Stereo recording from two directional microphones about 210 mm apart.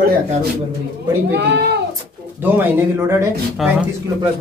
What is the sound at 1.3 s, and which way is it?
Speech, 50° right (ahead or behind).